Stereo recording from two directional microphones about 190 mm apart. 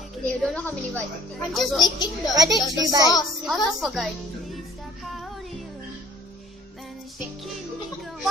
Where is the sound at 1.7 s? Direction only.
20° left (ahead or behind).